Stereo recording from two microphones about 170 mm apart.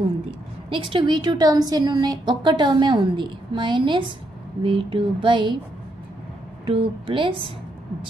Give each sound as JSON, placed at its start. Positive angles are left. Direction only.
{"t": 0.7, "sound": "a woman's voice", "side_deg": -30}
{"t": 6.6, "sound": "a woman's voice", "side_deg": -30}